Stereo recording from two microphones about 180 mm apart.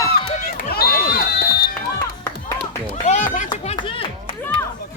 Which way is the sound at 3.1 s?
40° left (ahead or behind).